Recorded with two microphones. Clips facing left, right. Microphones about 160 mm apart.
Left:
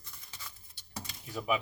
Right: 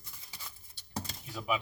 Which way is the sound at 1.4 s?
5° left (ahead or behind).